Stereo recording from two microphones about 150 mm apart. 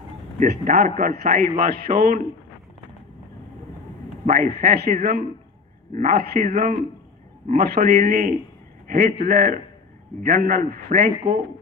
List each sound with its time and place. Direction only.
0.4 s a man's voice: 65° right (ahead or behind); by 1.5 s 90° right
1.6 s a man's voice: 70° right (ahead or behind)
4.3 s a man's voice: 90° right; by 11.4 s 65° right (ahead or behind)